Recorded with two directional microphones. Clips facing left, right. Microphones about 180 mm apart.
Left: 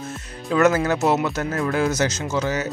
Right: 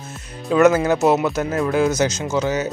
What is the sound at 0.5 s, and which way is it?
Speech, 20° right (ahead or behind).